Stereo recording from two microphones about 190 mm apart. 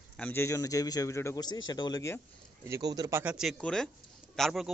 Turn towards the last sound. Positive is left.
turn(degrees=0)  # may be behind; listen again after turning